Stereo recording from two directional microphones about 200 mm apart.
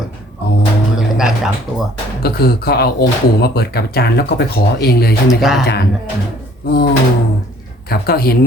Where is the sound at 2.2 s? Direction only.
50° left (ahead or behind).